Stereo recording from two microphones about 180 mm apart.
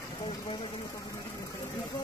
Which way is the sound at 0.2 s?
25° left (ahead or behind).